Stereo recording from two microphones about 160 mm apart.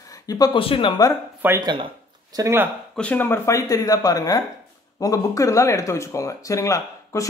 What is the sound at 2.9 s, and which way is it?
Speech, 10° left (ahead or behind).